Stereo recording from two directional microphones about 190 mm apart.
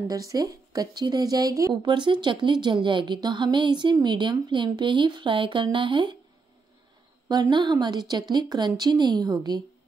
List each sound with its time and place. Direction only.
0.1 s a woman's voice: 20° right (ahead or behind)
7.2 s a woman's voice: 20° right (ahead or behind)